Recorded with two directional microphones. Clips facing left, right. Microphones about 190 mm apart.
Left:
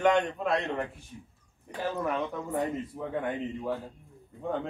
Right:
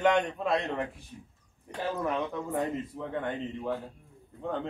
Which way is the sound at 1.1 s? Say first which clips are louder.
Left 1 dB; 50° right (ahead or behind).